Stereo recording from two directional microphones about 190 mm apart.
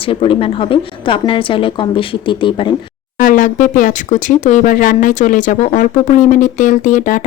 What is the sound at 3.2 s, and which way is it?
Speech, 45° left (ahead or behind).